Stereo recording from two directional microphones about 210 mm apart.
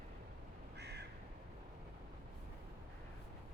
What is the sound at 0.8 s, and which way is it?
Crow, 50° right (ahead or behind).